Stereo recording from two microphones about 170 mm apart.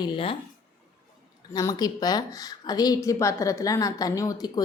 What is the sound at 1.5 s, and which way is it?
A woman's voice, 20° left (ahead or behind).